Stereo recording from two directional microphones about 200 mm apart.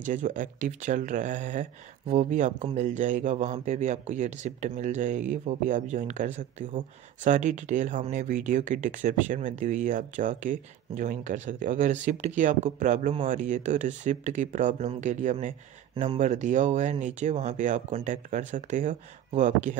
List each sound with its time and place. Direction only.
0.0 s speech: 40° right (ahead or behind)